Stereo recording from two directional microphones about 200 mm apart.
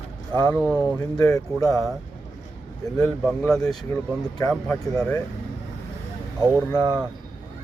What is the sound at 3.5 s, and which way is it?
Speech, 5° left (ahead or behind).